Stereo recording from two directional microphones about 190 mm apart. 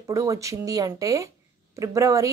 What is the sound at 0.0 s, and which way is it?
Speech, 15° right (ahead or behind).